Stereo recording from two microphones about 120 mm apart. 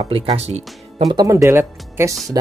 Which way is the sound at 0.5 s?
65° right (ahead or behind).